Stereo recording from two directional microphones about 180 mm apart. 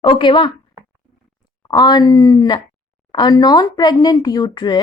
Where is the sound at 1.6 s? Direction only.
25° left (ahead or behind).